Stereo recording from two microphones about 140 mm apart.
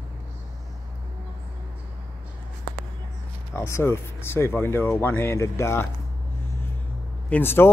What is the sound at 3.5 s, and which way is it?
Speech, 20° left (ahead or behind).